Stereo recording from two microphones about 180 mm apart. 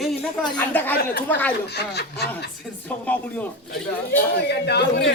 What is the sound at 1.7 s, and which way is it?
Speech, 65° left (ahead or behind).